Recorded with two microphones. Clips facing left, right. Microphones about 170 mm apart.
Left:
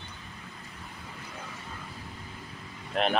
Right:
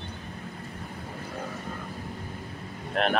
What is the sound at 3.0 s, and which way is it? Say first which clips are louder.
Vehicle: right 1 dB; centre (ahead or behind).